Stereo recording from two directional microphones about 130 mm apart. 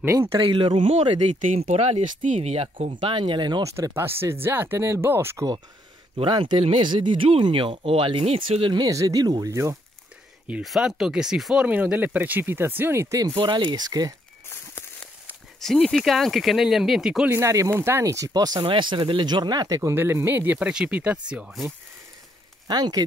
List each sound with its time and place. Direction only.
0.0 s speech: 20° right (ahead or behind)
0.4 s speech: 40° right (ahead or behind)
1.4 s speech: 65° right (ahead or behind)
3.0 s speech: 40° right (ahead or behind)
3.6 s speech: 20° right (ahead or behind)
6.1 s speech: 40° right (ahead or behind); by 9.8 s 25° right (ahead or behind)
10.4 s speech: 5° right (ahead or behind); by 14.1 s 30° right (ahead or behind)
14.5 s a sound: 15° left (ahead or behind)
15.6 s speech: centre (ahead or behind)
17.3 s speech: 20° right (ahead or behind)
19.9 s speech: 20° right (ahead or behind)
22.7 s speech: 30° right (ahead or behind)